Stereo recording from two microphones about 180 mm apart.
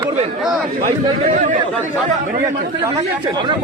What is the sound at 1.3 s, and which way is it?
Speech, 45° right (ahead or behind).